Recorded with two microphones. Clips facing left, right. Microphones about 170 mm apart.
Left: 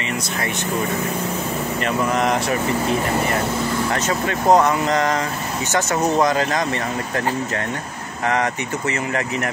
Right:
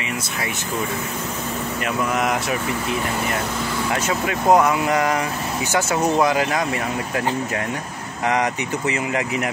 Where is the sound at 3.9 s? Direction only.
10° right (ahead or behind).